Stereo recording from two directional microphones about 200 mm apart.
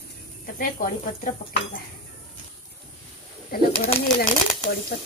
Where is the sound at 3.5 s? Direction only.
50° left (ahead or behind).